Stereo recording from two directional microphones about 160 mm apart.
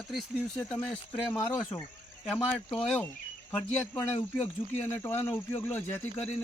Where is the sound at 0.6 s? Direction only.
10° left (ahead or behind).